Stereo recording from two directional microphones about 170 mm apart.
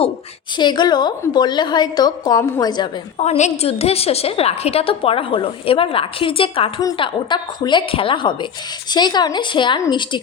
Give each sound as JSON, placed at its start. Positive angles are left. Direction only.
{"t": 0.5, "sound": "a woman's voice", "side_deg": 25}
{"t": 3.2, "sound": "a woman's voice", "side_deg": 40}